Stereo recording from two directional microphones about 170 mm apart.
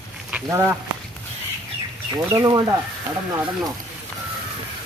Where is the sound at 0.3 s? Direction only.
10° right (ahead or behind).